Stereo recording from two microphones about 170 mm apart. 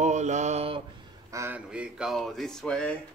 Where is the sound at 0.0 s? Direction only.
45° right (ahead or behind).